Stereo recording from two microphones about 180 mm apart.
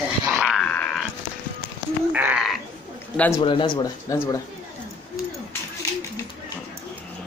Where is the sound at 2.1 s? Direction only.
5° right (ahead or behind).